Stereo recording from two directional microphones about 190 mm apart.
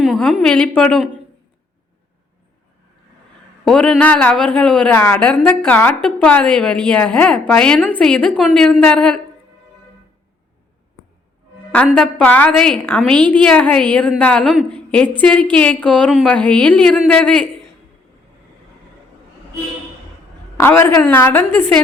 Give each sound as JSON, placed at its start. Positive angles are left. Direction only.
{"t": 0.0, "sound": "a woman's voice", "side_deg": 0}
{"t": 3.6, "sound": "a woman's voice", "side_deg": 5}
{"t": 11.9, "sound": "a woman's voice", "side_deg": 5}
{"t": 14.8, "sound": "a sound", "side_deg": 5}
{"t": 15.2, "sound": "a woman's voice", "side_deg": 5}
{"t": 20.6, "sound": "a woman's voice", "side_deg": 10}